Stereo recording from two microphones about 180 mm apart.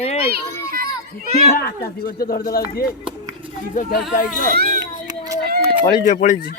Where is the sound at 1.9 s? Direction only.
55° left (ahead or behind).